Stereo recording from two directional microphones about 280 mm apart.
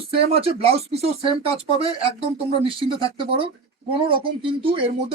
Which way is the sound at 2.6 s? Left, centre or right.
Centre.